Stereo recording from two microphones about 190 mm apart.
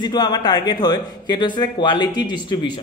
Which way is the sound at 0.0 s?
20° left (ahead or behind).